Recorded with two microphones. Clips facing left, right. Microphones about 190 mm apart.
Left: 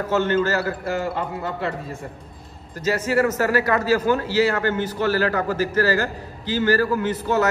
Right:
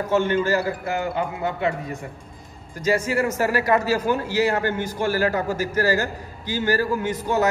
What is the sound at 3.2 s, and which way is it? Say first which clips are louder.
A man's voice: left 2 dB; 10° right (ahead or behind).